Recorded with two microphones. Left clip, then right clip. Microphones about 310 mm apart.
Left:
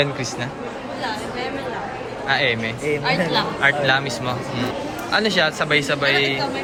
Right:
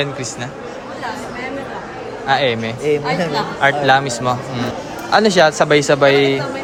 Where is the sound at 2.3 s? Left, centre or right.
Centre.